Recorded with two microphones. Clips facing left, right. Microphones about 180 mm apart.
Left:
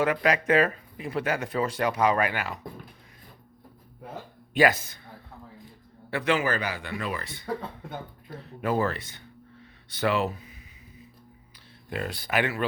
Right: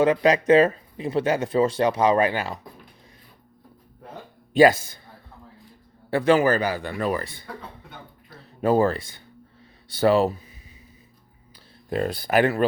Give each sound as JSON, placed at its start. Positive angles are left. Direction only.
{"t": 0.0, "sound": "speech", "side_deg": -25}
{"t": 4.5, "sound": "speech", "side_deg": -30}
{"t": 6.1, "sound": "speech", "side_deg": -35}
{"t": 8.6, "sound": "speech", "side_deg": -35}
{"t": 9.6, "sound": "a sound", "side_deg": -30}
{"t": 11.9, "sound": "speech", "side_deg": -35}